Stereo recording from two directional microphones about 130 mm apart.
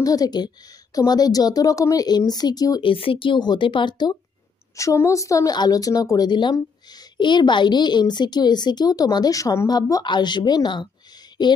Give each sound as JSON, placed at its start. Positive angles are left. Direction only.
{"t": 0.0, "sound": "a woman's voice", "side_deg": 30}
{"t": 2.9, "sound": "a woman's voice", "side_deg": 45}
{"t": 4.7, "sound": "a woman's voice", "side_deg": 25}